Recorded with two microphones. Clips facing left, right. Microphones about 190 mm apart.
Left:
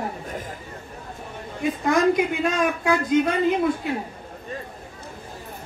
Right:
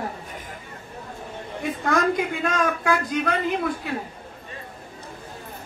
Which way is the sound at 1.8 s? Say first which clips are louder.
Left 3 dB; 20° left (ahead or behind).